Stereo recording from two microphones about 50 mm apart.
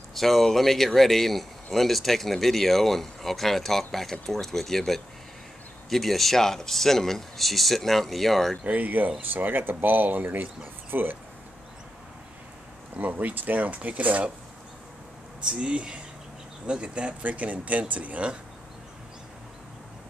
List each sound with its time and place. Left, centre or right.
0.1 s a man's voice: centre
8.6 s speech: right
12.9 s speech: right
15.5 s speech: right
17.2 s speech: right